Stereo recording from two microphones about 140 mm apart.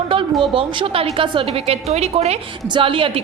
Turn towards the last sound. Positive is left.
turn(degrees=-40)  # may be behind; listen again after turning